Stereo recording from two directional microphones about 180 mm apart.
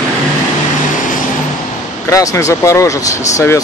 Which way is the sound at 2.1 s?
20° left (ahead or behind).